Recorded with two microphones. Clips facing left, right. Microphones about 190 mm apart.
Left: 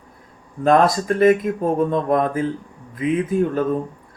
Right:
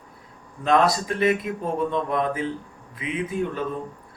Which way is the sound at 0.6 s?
45° left (ahead or behind).